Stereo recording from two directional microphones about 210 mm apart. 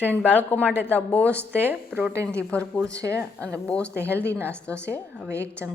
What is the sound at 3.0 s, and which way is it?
Speech, 15° right (ahead or behind).